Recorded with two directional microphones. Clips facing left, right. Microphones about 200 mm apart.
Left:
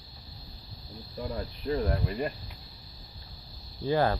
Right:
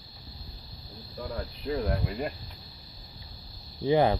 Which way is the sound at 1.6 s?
Centre (ahead or behind).